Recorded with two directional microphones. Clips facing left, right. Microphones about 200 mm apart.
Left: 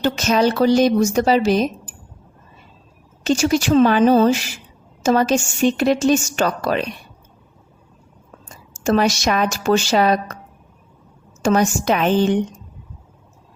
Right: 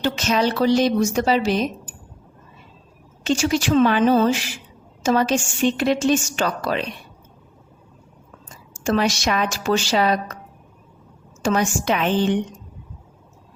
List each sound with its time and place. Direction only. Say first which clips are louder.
0.0 s a woman's voice: left 3 dB; 45° left (ahead or behind)
3.2 s a woman's voice: left 3 dB; 40° left (ahead or behind)
8.8 s a woman's voice: left 3 dB; 45° left (ahead or behind)
11.4 s a woman's voice: left 4 dB; 45° left (ahead or behind)